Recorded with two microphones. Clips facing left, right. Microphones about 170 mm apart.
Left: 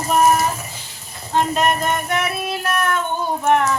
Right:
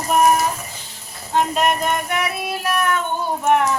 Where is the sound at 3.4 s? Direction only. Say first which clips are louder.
Even; 15° right (ahead or behind).